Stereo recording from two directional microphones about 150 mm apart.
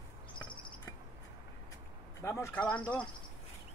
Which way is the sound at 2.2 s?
20° left (ahead or behind).